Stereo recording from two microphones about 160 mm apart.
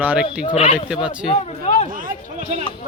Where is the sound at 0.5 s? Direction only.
40° left (ahead or behind).